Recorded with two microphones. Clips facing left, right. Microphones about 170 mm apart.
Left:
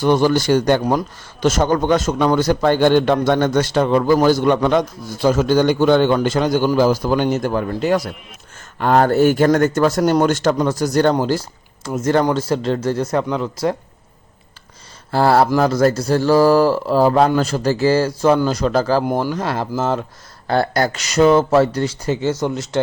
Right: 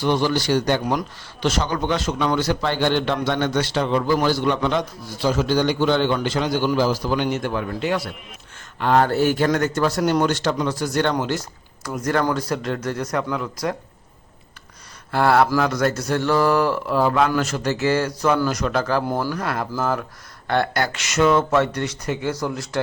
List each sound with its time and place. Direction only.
0.0 s a man's voice: 45° left (ahead or behind); by 13.7 s 30° left (ahead or behind)
15.1 s speech: 30° left (ahead or behind)
19.0 s speech: 20° left (ahead or behind)
20.5 s speech: 40° left (ahead or behind); by 22.8 s 20° left (ahead or behind)